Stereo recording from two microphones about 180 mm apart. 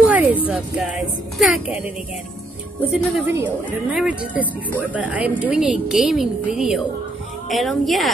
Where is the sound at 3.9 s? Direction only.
5° right (ahead or behind).